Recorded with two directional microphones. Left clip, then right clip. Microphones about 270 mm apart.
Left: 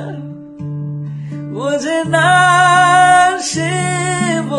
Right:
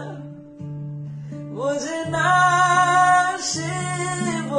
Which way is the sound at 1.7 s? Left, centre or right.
Left.